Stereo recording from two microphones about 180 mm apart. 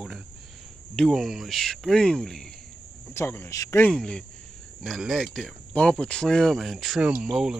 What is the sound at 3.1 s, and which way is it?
Speech, 15° left (ahead or behind).